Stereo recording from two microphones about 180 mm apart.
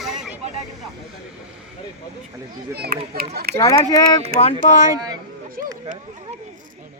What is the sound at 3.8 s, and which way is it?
Speech, 20° left (ahead or behind).